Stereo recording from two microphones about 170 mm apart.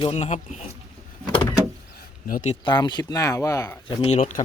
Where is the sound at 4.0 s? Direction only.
35° left (ahead or behind).